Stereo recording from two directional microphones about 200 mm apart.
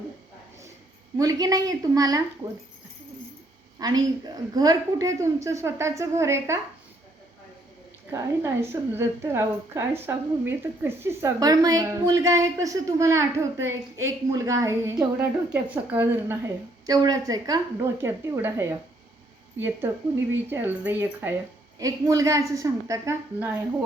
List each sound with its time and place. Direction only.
1.2 s a woman's voice: 15° right (ahead or behind)
3.8 s a woman's voice: 20° right (ahead or behind)
8.1 s a woman's voice: 15° right (ahead or behind)
16.8 s a woman's voice: 20° right (ahead or behind)